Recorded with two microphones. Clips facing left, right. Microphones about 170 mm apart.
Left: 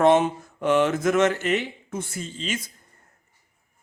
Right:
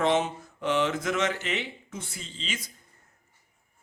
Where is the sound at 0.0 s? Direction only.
50° left (ahead or behind).